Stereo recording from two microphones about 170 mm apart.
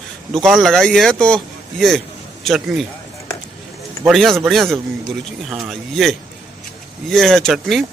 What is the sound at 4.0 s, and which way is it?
A man's voice, centre (ahead or behind).